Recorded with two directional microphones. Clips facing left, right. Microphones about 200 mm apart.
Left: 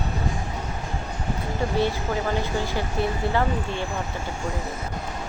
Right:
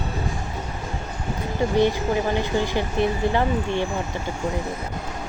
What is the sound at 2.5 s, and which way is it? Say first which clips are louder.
Speech: right 4 dB; 20° right (ahead or behind).